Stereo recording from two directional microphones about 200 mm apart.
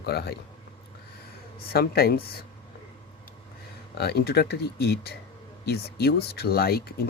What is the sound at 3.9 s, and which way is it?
Speech, 55° left (ahead or behind).